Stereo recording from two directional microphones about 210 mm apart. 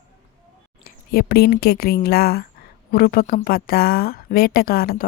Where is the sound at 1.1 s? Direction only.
45° left (ahead or behind).